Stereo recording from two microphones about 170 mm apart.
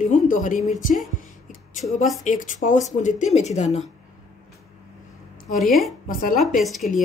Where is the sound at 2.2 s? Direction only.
50° left (ahead or behind).